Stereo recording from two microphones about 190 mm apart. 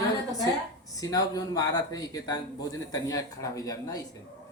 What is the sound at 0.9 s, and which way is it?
A man's voice, 20° left (ahead or behind).